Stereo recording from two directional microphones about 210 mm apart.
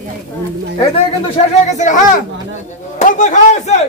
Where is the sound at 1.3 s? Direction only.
35° left (ahead or behind).